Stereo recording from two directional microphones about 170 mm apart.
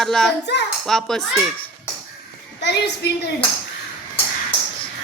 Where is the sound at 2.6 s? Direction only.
80° left.